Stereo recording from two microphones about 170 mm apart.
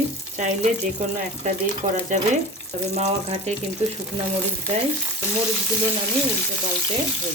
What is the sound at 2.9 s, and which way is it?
Speech, 40° right (ahead or behind).